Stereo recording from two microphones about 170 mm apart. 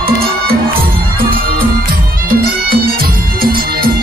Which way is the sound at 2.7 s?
60° right (ahead or behind).